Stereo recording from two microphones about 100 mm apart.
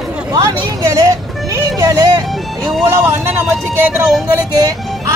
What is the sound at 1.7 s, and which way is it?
Music, 40° right (ahead or behind).